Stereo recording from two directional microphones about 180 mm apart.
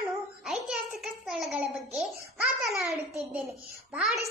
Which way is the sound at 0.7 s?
Centre (ahead or behind).